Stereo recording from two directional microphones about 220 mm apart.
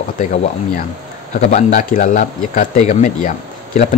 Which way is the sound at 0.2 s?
30° left (ahead or behind).